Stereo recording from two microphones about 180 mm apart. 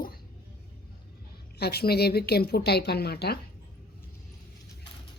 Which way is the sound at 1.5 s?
60° left (ahead or behind).